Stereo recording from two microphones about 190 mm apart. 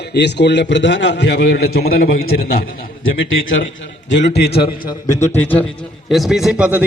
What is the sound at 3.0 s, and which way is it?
Speech, 90° left.